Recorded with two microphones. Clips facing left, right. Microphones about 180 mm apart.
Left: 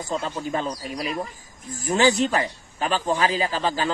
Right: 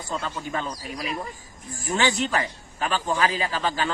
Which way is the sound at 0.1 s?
35° left (ahead or behind).